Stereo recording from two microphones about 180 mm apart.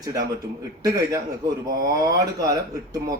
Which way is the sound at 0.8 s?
20° right (ahead or behind).